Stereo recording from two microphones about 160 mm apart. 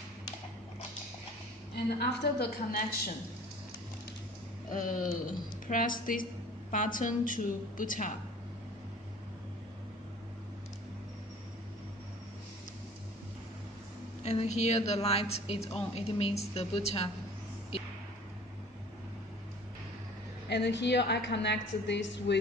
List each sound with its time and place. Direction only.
1.9 s a woman's voice: 90° left
4.6 s a sound: 55° left (ahead or behind)
5.7 s a woman's voice: 60° left (ahead or behind)
14.2 s a woman's voice: 40° left (ahead or behind)
20.4 s a woman's voice: 90° left